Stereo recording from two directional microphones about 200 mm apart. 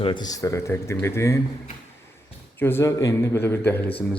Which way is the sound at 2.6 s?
10° left (ahead or behind).